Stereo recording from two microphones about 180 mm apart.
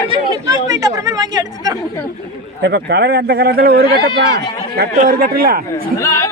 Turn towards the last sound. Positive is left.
turn(degrees=15)  # may be behind; listen again after turning